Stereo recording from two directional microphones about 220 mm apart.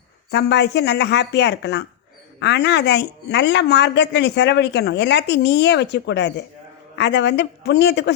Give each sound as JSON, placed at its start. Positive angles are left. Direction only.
{"t": 0.3, "sound": "a woman's voice", "side_deg": 50}